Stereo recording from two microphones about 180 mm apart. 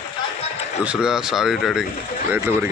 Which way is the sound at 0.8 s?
5° right (ahead or behind).